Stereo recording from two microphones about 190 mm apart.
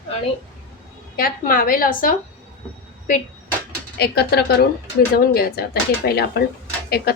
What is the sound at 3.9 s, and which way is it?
A woman's voice, 60° left (ahead or behind).